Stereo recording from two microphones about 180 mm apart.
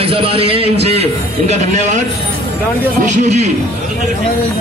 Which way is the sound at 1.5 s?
40° right (ahead or behind).